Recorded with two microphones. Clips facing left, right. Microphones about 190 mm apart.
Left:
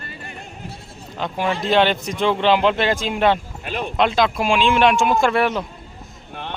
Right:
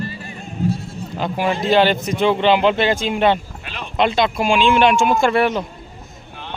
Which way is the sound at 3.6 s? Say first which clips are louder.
Left 6 dB; 45° left (ahead or behind).